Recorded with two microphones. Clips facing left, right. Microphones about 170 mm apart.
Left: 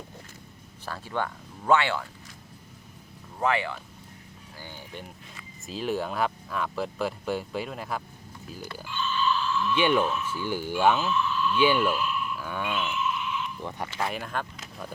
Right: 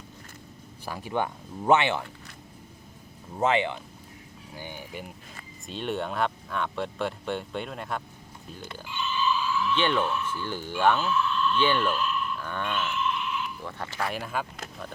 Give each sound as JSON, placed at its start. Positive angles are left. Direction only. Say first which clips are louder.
{"t": 0.9, "sound": "speech", "louder": "right 2 dB", "side_deg": -15}
{"t": 3.3, "sound": "speech", "louder": "right 2 dB", "side_deg": -20}
{"t": 5.6, "sound": "speech", "louder": "left 1 dB", "side_deg": 0}
{"t": 8.6, "sound": "a sound", "louder": "left 1 dB", "side_deg": -20}
{"t": 9.7, "sound": "speech", "louder": "left 4 dB", "side_deg": 10}
{"t": 13.7, "sound": "speech", "louder": "left 2 dB", "side_deg": 15}
{"t": 14.1, "sound": "speech", "louder": "right 1 dB", "side_deg": 0}